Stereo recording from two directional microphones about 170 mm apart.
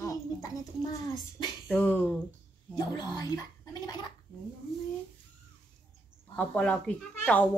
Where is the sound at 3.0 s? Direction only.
25° left (ahead or behind).